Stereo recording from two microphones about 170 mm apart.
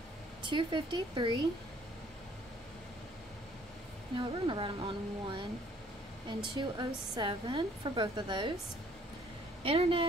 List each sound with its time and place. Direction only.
0.4 s speech: 30° right (ahead or behind)
4.1 s a woman's voice: 30° right (ahead or behind)
6.5 s speech: 25° right (ahead or behind)
9.6 s a woman's voice: 35° right (ahead or behind)